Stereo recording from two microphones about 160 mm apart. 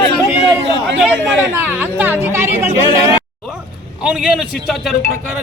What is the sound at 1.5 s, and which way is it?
Speech, 10° right (ahead or behind).